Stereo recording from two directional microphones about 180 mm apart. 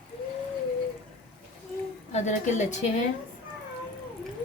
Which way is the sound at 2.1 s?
40° left (ahead or behind).